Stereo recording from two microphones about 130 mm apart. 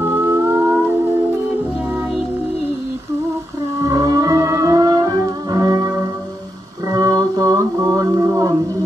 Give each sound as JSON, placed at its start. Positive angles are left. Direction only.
{"t": 0.3, "sound": "music", "side_deg": -20}
{"t": 3.8, "sound": "music", "side_deg": -25}
{"t": 6.9, "sound": "mantra", "side_deg": -25}